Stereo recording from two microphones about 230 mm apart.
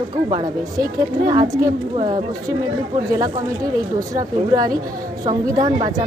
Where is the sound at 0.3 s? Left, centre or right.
Centre.